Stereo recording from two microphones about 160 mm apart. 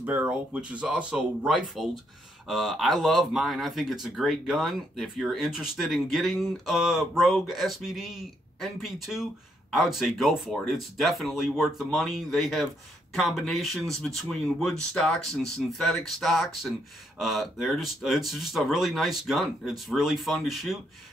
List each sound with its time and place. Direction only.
0.0 s speech: 10° right (ahead or behind)